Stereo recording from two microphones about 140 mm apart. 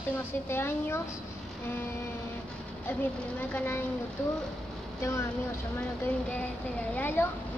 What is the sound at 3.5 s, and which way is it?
Speech, 15° left (ahead or behind).